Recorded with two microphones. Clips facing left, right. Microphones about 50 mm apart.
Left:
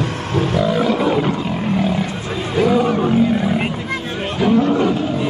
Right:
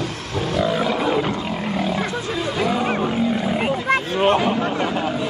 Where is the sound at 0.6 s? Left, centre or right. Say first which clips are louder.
Left 2 dB; centre.